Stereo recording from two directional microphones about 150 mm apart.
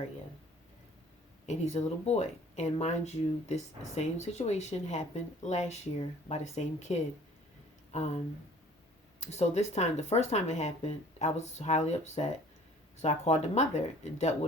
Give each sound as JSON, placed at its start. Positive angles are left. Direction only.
{"t": 1.5, "sound": "speech", "side_deg": 50}
{"t": 9.2, "sound": "speech", "side_deg": 45}